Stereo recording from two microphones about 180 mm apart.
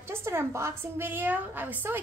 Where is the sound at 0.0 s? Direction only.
15° right (ahead or behind).